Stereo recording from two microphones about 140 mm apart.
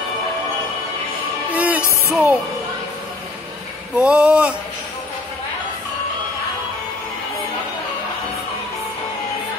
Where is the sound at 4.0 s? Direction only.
10° right (ahead or behind).